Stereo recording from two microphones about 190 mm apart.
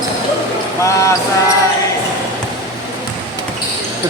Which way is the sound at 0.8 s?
15° left (ahead or behind).